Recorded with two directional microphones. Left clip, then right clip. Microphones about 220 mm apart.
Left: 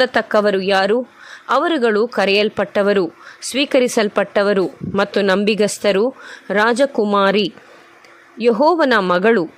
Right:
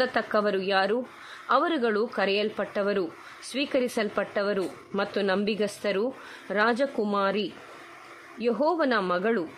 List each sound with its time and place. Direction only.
0.0 s a woman's voice: 30° left (ahead or behind)